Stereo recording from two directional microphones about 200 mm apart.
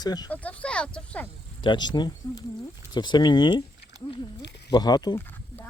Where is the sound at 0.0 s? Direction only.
20° left (ahead or behind).